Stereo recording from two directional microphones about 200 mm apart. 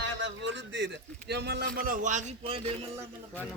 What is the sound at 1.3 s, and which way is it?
A man's voice, 55° right (ahead or behind).